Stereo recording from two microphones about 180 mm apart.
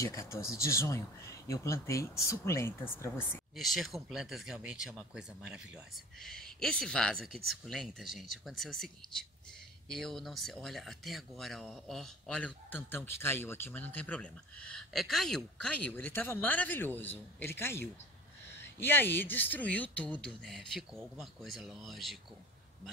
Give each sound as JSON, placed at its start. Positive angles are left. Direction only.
{"t": 0.0, "sound": "speech", "side_deg": 15}
{"t": 3.5, "sound": "speech", "side_deg": 0}